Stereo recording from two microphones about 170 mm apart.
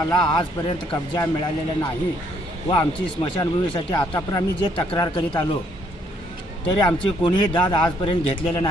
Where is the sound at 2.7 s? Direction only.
30° left (ahead or behind).